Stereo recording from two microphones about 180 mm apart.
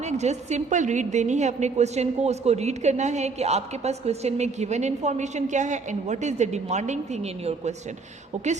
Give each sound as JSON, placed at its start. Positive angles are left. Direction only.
{"t": 0.0, "sound": "a woman's voice", "side_deg": -40}